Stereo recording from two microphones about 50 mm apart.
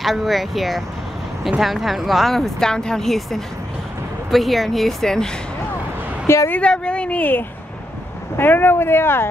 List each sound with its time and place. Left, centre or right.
0.0 s speech: centre
6.2 s a woman's voice: left
6.6 s speech: left
8.4 s speech: left